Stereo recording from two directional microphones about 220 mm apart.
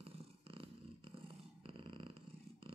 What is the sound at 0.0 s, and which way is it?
Purr, 25° right (ahead or behind).